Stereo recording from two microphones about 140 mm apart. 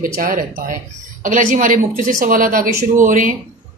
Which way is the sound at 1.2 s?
70° right (ahead or behind).